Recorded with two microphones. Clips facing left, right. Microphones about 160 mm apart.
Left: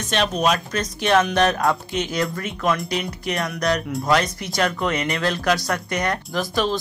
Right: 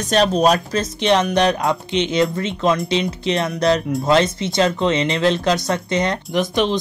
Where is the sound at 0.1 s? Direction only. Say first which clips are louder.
Right 5 dB; 35° right (ahead or behind).